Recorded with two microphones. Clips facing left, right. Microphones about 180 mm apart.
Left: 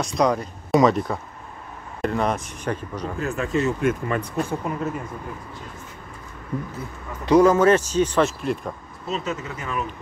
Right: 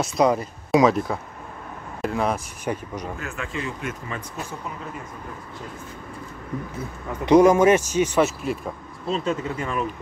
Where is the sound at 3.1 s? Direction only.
35° left (ahead or behind); by 4.7 s 55° left (ahead or behind).